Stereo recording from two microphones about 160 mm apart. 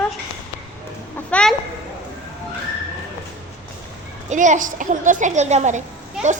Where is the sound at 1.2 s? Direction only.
5° left (ahead or behind).